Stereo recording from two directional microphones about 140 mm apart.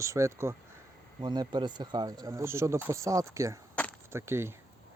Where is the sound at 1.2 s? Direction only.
30° right (ahead or behind).